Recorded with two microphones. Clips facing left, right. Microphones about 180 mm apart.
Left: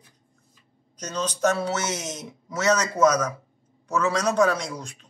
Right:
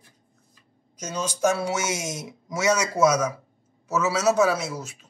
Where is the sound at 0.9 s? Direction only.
10° right (ahead or behind).